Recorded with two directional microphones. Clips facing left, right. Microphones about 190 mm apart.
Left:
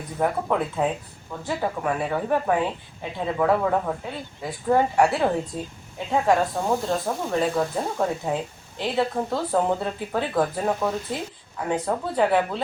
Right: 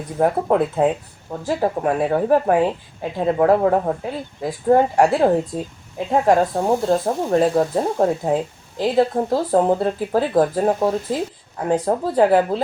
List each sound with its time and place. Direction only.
0.2 s speech: 35° right (ahead or behind)